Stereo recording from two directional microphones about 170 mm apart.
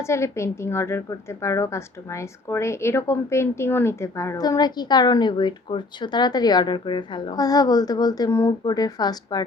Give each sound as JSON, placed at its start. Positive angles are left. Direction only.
{"t": 0.0, "sound": "a woman's voice", "side_deg": 15}